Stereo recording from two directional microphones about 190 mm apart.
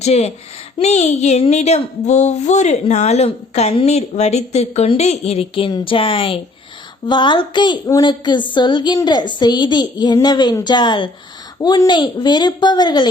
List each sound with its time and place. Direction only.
0.0 s a woman's voice: 35° left (ahead or behind)